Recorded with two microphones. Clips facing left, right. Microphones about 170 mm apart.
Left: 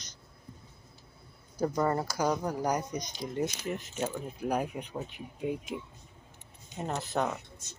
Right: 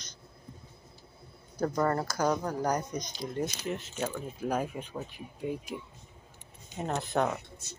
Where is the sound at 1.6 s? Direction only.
10° left (ahead or behind).